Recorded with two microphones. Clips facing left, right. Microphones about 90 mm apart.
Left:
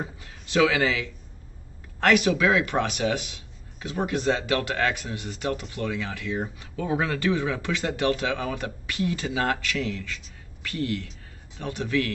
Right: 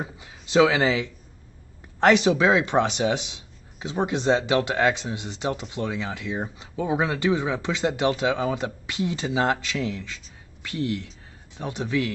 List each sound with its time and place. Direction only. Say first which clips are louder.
0.0 s speech: right 1 dB; 20° right (ahead or behind)